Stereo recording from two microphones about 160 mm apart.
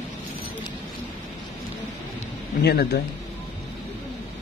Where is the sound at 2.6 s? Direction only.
85° left.